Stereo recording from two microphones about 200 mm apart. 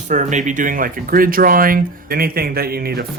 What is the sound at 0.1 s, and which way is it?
Speech, 35° right (ahead or behind).